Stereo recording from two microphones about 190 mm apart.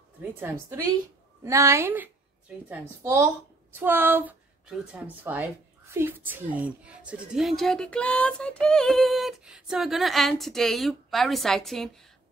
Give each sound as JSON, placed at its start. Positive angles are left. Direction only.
{"t": 0.2, "sound": "a woman's voice", "side_deg": -10}